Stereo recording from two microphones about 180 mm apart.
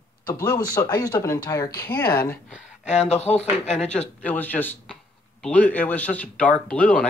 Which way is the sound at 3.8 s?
5° left (ahead or behind).